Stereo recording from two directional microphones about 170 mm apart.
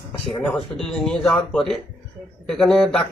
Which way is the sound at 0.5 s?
5° left (ahead or behind).